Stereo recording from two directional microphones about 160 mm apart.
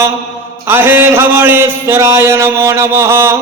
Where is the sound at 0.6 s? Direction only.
15° right (ahead or behind).